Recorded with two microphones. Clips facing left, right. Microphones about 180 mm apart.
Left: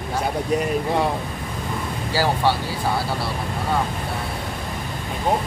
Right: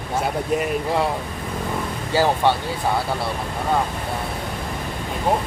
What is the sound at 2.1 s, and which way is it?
Speech, 20° right (ahead or behind).